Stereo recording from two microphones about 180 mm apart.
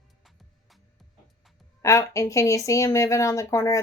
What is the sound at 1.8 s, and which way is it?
Speech, 15° left (ahead or behind).